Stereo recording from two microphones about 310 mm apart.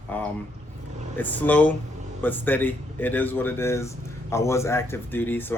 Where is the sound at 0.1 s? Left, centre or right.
Centre.